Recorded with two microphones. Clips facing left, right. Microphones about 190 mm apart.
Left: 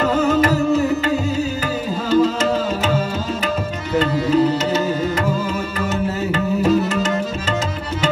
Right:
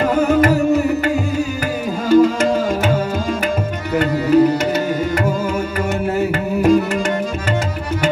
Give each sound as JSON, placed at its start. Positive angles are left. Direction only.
{"t": 0.1, "sound": "music", "side_deg": -10}
{"t": 3.9, "sound": "tabla", "side_deg": -10}
{"t": 6.1, "sound": "music", "side_deg": -10}